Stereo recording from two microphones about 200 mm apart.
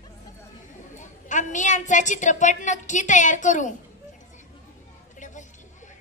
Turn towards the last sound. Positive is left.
turn(degrees=40)  # may be behind; listen again after turning